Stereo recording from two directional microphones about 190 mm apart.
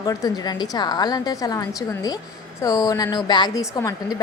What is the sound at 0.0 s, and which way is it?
A woman's voice, 20° left (ahead or behind).